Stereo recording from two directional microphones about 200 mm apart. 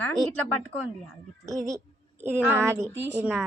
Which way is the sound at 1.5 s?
15° right (ahead or behind).